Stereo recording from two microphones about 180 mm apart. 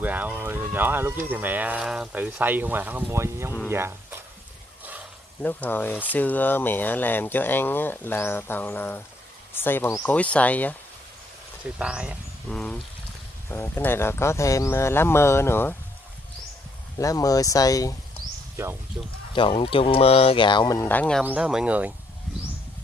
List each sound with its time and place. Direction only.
0.0 s speech: 10° right (ahead or behind)
5.4 s speech: 10° left (ahead or behind)
11.8 s speech: 5° right (ahead or behind); by 15.7 s 15° left (ahead or behind)
17.0 s speech: 20° left (ahead or behind)
19.0 s speech: 15° right (ahead or behind)
19.3 s speech: 30° left (ahead or behind); by 21.2 s 10° left (ahead or behind)
21.2 s speech: 5° right (ahead or behind)